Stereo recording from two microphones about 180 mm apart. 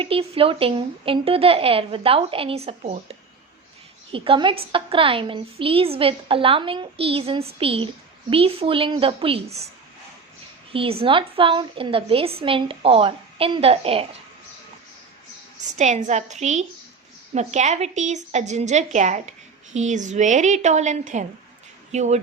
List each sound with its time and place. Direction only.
0.0 s a woman's voice: 30° right (ahead or behind)
10.7 s a woman's voice: 30° right (ahead or behind)
15.7 s a woman's voice: 45° right (ahead or behind)